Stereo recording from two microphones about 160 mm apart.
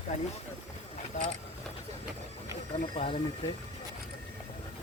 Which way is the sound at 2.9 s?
30° left (ahead or behind).